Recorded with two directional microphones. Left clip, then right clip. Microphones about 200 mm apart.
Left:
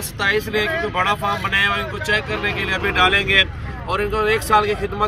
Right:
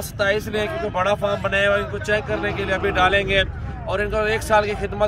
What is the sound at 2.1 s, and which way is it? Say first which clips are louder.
Speech: left 2 dB; 25° right (ahead or behind).